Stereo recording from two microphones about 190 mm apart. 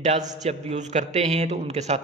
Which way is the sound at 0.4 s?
35° right (ahead or behind).